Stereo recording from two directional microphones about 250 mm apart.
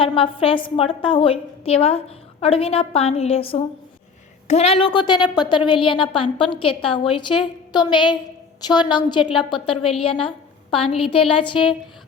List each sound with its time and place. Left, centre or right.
0.0 s a woman's voice: left